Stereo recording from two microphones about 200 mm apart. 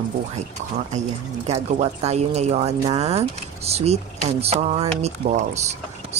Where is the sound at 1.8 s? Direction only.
30° right (ahead or behind).